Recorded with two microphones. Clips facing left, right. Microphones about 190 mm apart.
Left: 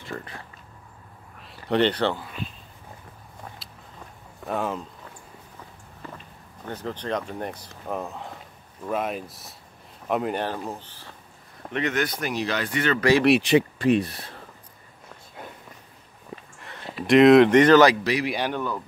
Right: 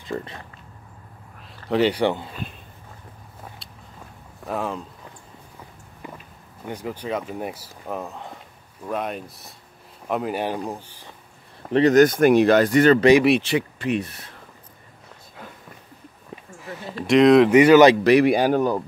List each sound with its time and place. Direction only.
0.0 s speech: 20° right (ahead or behind)
1.7 s speech: 10° right (ahead or behind)
4.5 s speech: centre (ahead or behind)
6.0 s speech: 10° right (ahead or behind)
10.4 s speech: 15° right (ahead or behind)
11.7 s speech: 35° right (ahead or behind)
13.4 s speech: 20° left (ahead or behind)
13.7 s speech: 35° left (ahead or behind)
16.9 s speech: centre (ahead or behind)
18.0 s speech: 55° right (ahead or behind)